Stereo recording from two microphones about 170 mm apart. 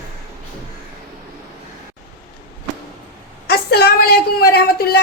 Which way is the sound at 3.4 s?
65° left (ahead or behind).